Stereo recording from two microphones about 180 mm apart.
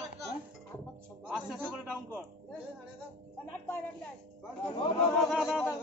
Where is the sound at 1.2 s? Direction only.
5° right (ahead or behind).